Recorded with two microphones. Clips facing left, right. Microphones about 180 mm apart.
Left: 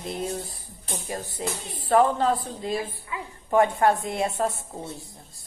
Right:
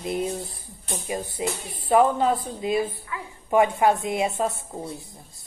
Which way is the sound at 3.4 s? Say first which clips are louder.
Right 1 dB; 10° right (ahead or behind).